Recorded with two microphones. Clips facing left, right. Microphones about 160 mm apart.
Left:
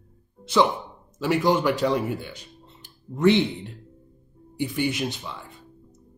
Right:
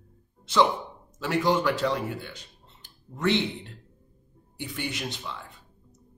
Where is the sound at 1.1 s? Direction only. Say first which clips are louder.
Left 3 dB; 10° left (ahead or behind).